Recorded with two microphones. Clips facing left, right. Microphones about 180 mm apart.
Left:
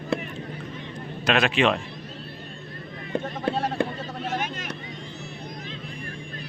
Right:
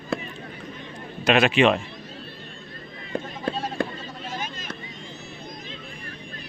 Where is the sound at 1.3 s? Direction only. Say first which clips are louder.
Right 3 dB; centre (ahead or behind).